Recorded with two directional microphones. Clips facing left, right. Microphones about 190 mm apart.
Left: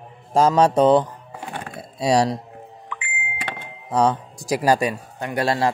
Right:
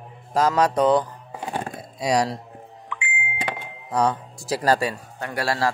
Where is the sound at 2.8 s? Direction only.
45° left (ahead or behind).